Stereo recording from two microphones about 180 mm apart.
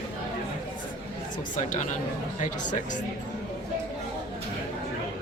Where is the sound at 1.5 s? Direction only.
45° left (ahead or behind).